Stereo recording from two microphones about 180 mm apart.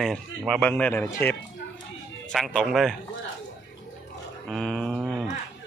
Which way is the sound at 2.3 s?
Centre (ahead or behind).